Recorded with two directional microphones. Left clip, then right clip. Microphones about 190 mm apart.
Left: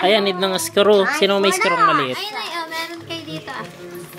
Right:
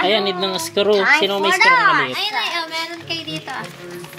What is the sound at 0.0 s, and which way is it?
Speech, 10° left (ahead or behind).